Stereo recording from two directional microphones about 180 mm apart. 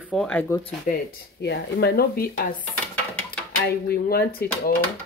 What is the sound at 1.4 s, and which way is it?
Speech, 65° left (ahead or behind).